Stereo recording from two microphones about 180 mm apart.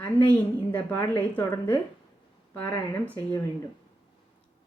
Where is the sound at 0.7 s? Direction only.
10° left (ahead or behind).